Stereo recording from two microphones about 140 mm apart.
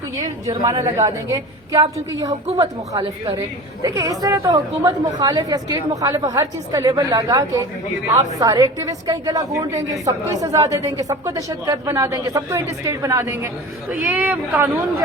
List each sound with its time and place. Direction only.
0.5 s a woman's voice: 30° right (ahead or behind); by 14.7 s 15° right (ahead or behind)